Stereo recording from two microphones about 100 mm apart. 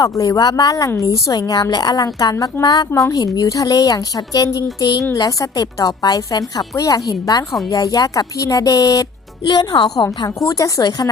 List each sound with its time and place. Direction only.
0.0 s speech: 35° left (ahead or behind)